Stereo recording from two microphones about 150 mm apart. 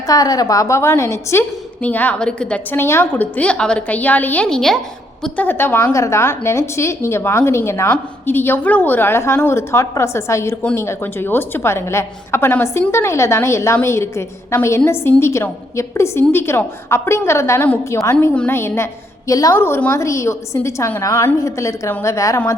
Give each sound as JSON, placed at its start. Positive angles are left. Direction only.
{"t": 0.1, "sound": "a woman's voice", "side_deg": 25}